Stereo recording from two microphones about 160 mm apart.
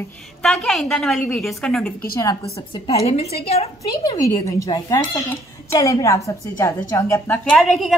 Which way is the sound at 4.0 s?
25° left (ahead or behind).